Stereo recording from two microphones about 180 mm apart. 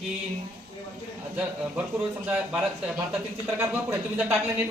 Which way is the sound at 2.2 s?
10° right (ahead or behind).